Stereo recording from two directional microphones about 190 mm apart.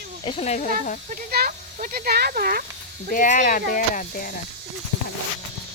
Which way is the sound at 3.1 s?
45° left (ahead or behind).